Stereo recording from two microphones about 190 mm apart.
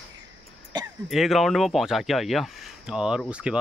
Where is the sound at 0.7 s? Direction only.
20° right (ahead or behind).